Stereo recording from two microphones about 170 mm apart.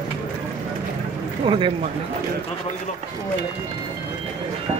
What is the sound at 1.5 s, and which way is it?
Speech, 30° right (ahead or behind).